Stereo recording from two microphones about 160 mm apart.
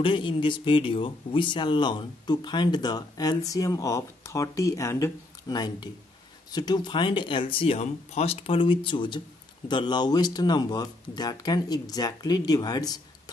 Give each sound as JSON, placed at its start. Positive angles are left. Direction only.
{"t": 0.0, "sound": "speech", "side_deg": 30}